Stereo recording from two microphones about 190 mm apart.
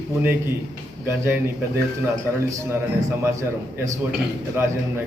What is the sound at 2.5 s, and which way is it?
A man's voice, 15° right (ahead or behind).